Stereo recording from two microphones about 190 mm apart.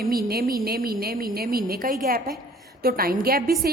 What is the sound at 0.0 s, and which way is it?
A woman's voice, 50° right (ahead or behind).